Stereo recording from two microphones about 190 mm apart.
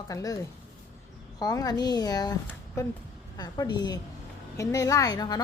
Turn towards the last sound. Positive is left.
turn(degrees=20)  # may be behind; listen again after turning